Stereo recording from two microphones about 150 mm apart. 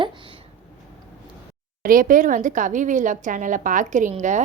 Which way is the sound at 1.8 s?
65° right (ahead or behind).